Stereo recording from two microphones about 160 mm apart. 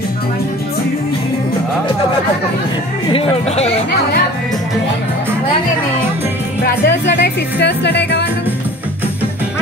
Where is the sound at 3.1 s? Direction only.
40° left (ahead or behind).